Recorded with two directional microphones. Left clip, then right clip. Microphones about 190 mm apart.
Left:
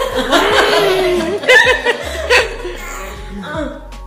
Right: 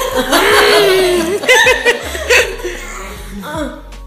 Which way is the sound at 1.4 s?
15° right (ahead or behind).